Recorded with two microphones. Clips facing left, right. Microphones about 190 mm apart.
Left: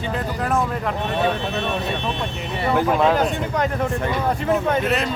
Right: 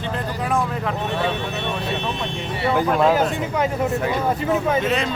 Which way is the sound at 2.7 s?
Centre (ahead or behind).